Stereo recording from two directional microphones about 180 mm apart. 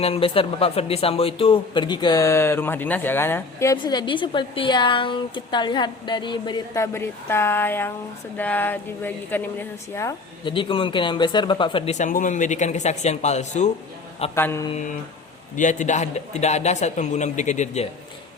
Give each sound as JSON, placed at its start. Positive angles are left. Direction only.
{"t": 0.0, "sound": "speech", "side_deg": 30}
{"t": 10.4, "sound": "speech", "side_deg": 30}
{"t": 11.9, "sound": "a man's voice", "side_deg": 45}
{"t": 14.3, "sound": "speech", "side_deg": 15}
{"t": 15.5, "sound": "a man's voice", "side_deg": 45}